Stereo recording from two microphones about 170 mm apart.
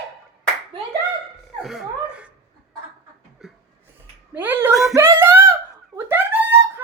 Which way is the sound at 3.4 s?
Centre (ahead or behind).